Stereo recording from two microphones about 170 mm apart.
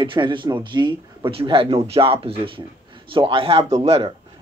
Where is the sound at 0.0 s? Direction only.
30° right (ahead or behind).